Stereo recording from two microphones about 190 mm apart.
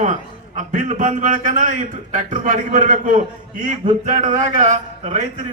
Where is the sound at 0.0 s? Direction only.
40° right (ahead or behind).